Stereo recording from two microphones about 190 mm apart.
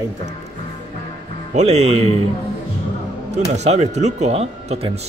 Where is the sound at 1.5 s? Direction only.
35° right (ahead or behind).